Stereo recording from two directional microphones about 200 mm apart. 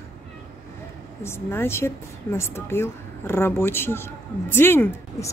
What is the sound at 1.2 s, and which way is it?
Speech, 10° left (ahead or behind).